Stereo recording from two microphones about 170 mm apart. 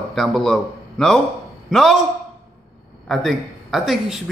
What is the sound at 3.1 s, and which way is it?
Speech, centre (ahead or behind).